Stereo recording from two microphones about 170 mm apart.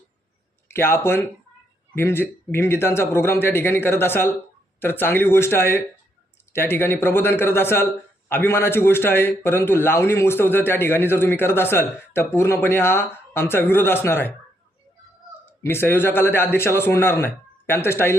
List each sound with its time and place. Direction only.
0.7 s a man's voice: 15° left (ahead or behind)
15.6 s a man's voice: 15° left (ahead or behind)